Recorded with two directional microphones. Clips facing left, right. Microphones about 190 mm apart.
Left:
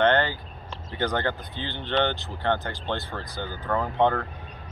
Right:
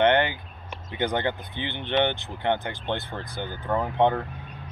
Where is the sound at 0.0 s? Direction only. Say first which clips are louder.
Right 1 dB; 15° right (ahead or behind).